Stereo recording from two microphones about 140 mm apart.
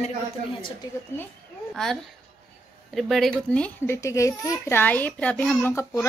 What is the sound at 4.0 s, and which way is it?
Speech, 20° left (ahead or behind).